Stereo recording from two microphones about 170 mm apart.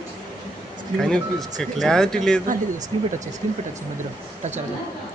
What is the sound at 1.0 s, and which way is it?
Speech, 5° left (ahead or behind).